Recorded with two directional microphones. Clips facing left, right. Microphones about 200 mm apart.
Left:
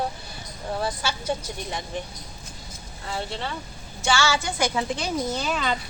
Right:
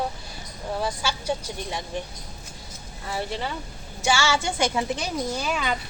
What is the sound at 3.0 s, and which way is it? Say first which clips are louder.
A woman's voice: right 1 dB; 10° right (ahead or behind).